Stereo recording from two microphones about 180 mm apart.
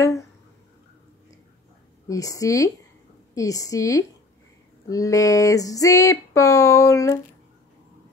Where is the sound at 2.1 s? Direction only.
20° left (ahead or behind).